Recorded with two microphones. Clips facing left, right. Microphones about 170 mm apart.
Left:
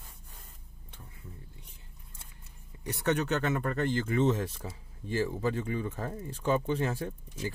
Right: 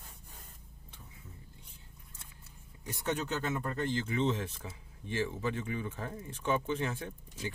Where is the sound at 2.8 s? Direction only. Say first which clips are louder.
Left 6 dB; 70° left (ahead or behind).